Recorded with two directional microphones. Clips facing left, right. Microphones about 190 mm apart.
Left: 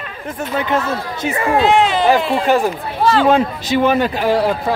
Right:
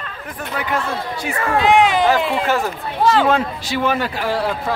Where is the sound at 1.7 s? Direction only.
15° right (ahead or behind).